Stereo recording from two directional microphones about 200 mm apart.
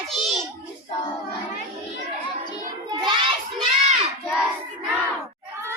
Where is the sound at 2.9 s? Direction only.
25° right (ahead or behind).